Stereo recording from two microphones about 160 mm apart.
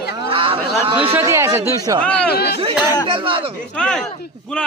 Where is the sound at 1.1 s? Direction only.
15° right (ahead or behind).